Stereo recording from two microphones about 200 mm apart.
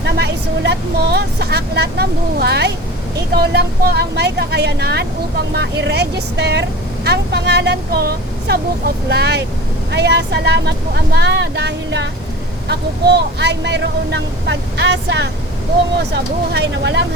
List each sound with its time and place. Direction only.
0.0 s vehicle: 60° right (ahead or behind)
3.3 s speech: 55° right (ahead or behind)